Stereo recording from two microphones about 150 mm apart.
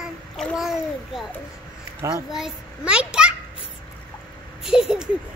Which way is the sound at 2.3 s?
5° right (ahead or behind).